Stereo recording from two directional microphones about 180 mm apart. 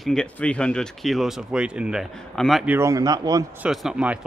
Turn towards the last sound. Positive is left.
turn(degrees=-5)  # may be behind; listen again after turning